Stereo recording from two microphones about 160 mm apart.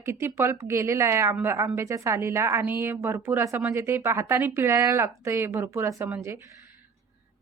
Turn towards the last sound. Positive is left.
turn(degrees=-15)  # may be behind; listen again after turning